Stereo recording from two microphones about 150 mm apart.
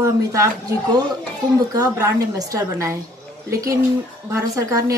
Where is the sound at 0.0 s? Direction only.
20° right (ahead or behind).